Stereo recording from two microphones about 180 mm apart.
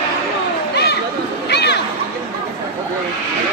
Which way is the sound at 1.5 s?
65° left (ahead or behind).